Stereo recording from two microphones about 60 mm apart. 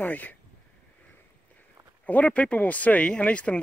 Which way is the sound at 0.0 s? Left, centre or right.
Left.